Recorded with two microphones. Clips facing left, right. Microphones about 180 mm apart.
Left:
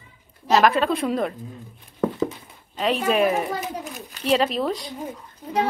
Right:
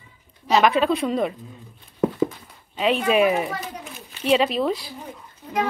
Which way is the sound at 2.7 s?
Centre (ahead or behind).